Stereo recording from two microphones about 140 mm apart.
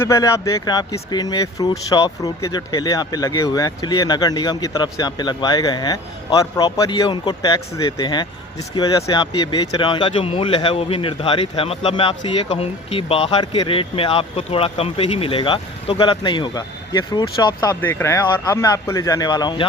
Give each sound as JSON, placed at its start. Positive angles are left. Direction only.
{"t": 0.0, "sound": "speech", "side_deg": 20}
{"t": 17.7, "sound": "speech", "side_deg": 15}